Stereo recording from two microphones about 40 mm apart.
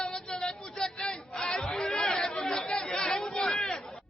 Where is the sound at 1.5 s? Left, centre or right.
Centre.